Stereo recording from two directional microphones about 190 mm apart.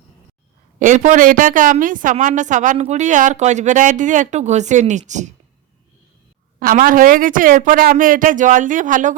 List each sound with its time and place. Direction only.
0.8 s a woman's voice: 40° right (ahead or behind)
6.6 s a woman's voice: 50° right (ahead or behind)